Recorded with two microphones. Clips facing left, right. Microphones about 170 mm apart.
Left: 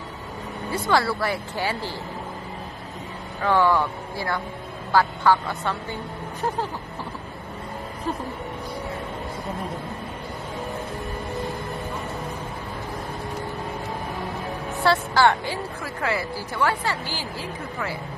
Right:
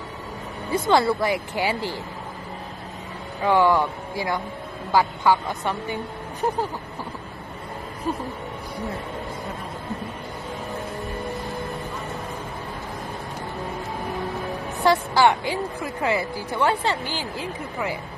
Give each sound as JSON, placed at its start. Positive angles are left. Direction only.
{"t": 0.7, "sound": "speech", "side_deg": -20}
{"t": 3.4, "sound": "speech", "side_deg": -15}
{"t": 14.8, "sound": "speech", "side_deg": -15}